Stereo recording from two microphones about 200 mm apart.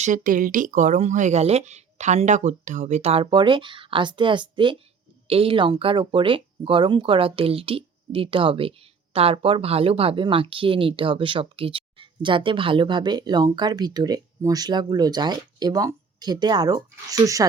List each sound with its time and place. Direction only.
0.0 s speech: 40° right (ahead or behind); by 17.4 s 15° right (ahead or behind)